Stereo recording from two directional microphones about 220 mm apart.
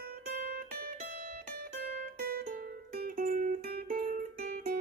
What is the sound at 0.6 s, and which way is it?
Music, 45° right (ahead or behind).